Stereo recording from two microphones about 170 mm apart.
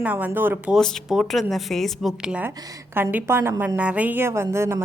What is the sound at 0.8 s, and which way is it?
A woman's voice, centre (ahead or behind).